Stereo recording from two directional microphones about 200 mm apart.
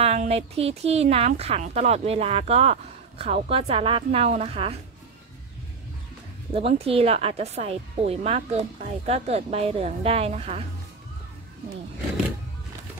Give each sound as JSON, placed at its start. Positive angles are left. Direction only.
{"t": 0.0, "sound": "a woman's voice", "side_deg": -35}
{"t": 6.5, "sound": "a woman's voice", "side_deg": -30}